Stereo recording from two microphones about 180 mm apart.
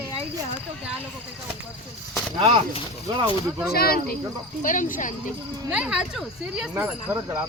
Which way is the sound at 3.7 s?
60° left (ahead or behind).